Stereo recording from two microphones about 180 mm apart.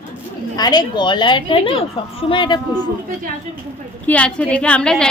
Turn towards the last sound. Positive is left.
turn(degrees=5)  # may be behind; listen again after turning